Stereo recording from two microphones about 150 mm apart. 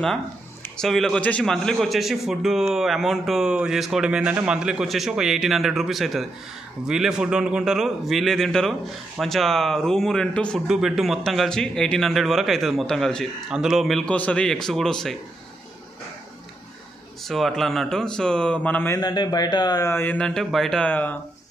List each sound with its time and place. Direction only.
0.0 s a man's voice: 5° left (ahead or behind)
17.2 s a man's voice: centre (ahead or behind)
18.9 s speech: 30° left (ahead or behind); by 21.2 s 10° left (ahead or behind)